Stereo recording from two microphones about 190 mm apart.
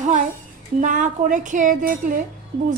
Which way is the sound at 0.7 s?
40° right (ahead or behind).